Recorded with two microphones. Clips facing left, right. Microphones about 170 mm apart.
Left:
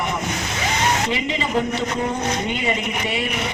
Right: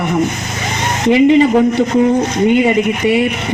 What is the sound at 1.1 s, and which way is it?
Speech, 60° right (ahead or behind).